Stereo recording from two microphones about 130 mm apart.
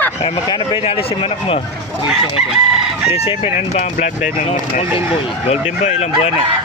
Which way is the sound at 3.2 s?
55° left (ahead or behind).